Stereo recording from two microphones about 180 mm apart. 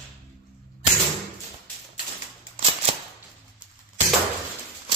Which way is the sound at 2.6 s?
30° right (ahead or behind).